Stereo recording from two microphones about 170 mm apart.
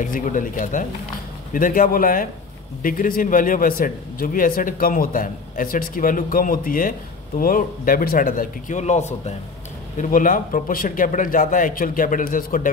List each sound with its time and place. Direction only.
0.0 s a man's voice: 50° left (ahead or behind)